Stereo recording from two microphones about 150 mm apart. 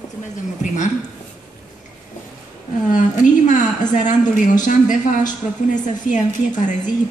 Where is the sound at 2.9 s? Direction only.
55° left (ahead or behind).